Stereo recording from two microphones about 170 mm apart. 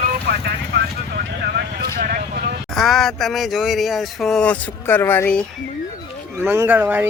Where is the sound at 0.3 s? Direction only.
70° right (ahead or behind).